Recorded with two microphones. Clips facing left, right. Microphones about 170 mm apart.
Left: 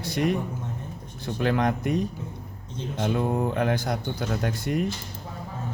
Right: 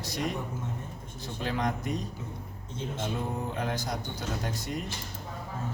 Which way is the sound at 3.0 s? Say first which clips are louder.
Left 10 dB; 75° left (ahead or behind).